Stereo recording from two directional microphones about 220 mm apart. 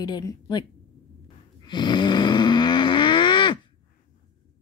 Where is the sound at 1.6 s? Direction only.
20° left (ahead or behind).